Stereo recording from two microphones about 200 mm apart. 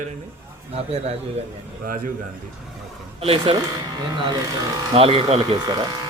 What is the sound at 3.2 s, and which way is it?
Speech, 30° right (ahead or behind).